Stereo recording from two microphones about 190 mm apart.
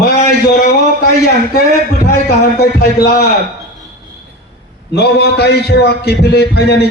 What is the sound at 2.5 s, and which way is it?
Speech, 55° left (ahead or behind).